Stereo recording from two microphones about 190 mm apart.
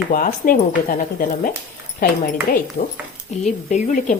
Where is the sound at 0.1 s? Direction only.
45° left (ahead or behind).